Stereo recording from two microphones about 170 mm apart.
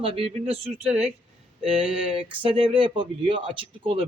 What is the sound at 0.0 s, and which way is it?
Speech, 35° right (ahead or behind).